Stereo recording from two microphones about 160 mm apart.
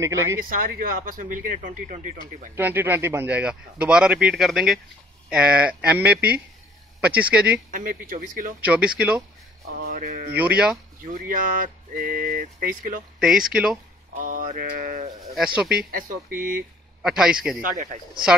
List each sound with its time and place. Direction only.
0.0 s speech: 20° right (ahead or behind)
0.4 s speech: 65° right (ahead or behind)
2.5 s a man's voice: 10° right (ahead or behind)
7.7 s speech: 60° right (ahead or behind)
8.5 s a man's voice: 10° right (ahead or behind)
9.8 s speech: 60° right (ahead or behind)
13.2 s a man's voice: 5° right (ahead or behind)
14.1 s speech: 60° right (ahead or behind)
15.3 s a man's voice: 5° right (ahead or behind)
15.9 s speech: 60° right (ahead or behind)
17.0 s a man's voice: 5° right (ahead or behind)
17.6 s speech: 60° right (ahead or behind)